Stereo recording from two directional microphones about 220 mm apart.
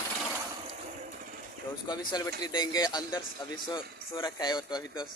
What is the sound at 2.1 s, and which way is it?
A man's voice, 20° left (ahead or behind).